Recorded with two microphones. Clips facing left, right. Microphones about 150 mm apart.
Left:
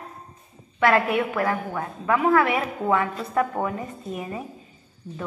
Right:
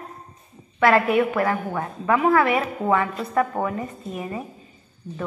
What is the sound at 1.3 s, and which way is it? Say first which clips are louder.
A woman's voice: right 2 dB; 10° right (ahead or behind).